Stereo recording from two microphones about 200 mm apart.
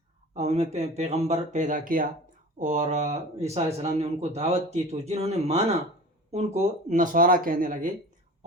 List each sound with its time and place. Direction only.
0.3 s speech: 35° right (ahead or behind)